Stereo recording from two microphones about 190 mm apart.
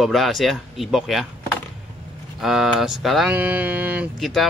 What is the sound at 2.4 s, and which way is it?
Speech, centre (ahead or behind).